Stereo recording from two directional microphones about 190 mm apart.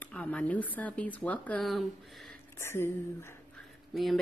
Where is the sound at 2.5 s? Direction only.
15° left (ahead or behind).